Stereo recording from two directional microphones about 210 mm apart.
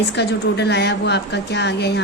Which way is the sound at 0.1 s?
55° left (ahead or behind).